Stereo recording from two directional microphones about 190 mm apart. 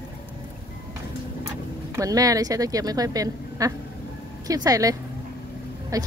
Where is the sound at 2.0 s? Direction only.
20° right (ahead or behind).